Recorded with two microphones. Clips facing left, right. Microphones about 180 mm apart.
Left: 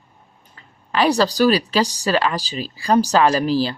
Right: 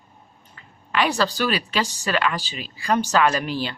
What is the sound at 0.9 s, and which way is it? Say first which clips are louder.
Speech: left 5 dB; 35° left (ahead or behind).